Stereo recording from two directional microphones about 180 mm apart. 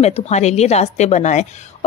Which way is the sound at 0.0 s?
35° left (ahead or behind).